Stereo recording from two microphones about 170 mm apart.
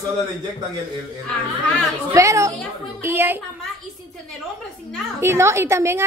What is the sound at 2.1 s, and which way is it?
A woman's voice, 20° right (ahead or behind).